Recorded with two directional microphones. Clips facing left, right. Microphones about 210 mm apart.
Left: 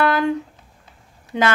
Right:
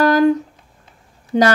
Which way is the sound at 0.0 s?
40° right (ahead or behind).